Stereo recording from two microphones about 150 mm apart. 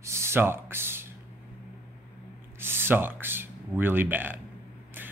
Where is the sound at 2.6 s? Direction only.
15° right (ahead or behind).